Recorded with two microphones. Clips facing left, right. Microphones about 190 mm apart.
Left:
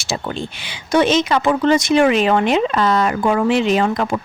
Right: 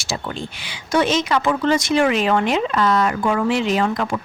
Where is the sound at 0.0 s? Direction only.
25° left (ahead or behind).